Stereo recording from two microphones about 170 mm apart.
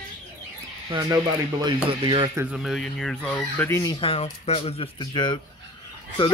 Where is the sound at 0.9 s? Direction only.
25° right (ahead or behind).